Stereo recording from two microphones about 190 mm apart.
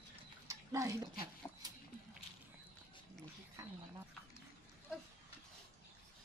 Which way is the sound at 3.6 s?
20° right (ahead or behind).